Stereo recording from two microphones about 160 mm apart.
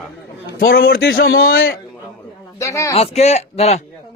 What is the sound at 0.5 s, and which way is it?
A man's voice, 70° left (ahead or behind).